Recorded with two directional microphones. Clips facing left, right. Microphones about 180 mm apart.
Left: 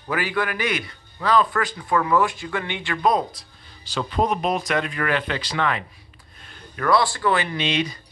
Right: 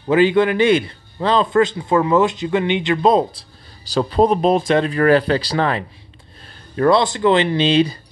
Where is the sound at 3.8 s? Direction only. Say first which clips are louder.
Right 8 dB; 35° right (ahead or behind).